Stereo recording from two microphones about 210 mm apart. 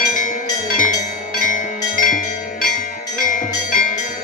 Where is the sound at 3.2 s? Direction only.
40° left (ahead or behind).